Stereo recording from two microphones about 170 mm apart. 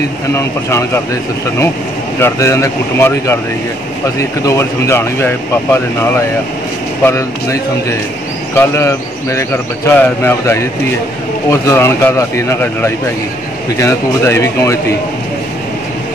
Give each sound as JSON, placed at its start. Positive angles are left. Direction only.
{"t": 0.4, "sound": "speech", "side_deg": 15}
{"t": 2.1, "sound": "speech", "side_deg": 15}
{"t": 8.5, "sound": "speech", "side_deg": 15}